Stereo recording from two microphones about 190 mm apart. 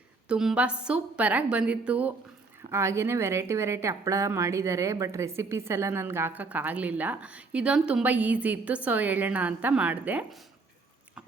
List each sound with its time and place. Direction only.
0.3 s a woman's voice: 5° right (ahead or behind)